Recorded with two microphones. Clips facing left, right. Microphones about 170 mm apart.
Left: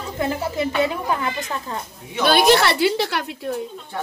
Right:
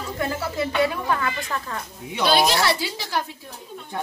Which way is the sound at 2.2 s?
55° left (ahead or behind).